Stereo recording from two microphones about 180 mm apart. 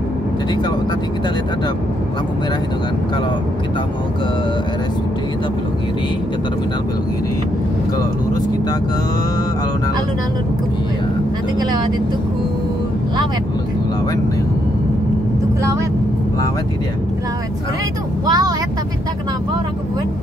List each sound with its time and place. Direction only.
18.2 s speech: 20° right (ahead or behind)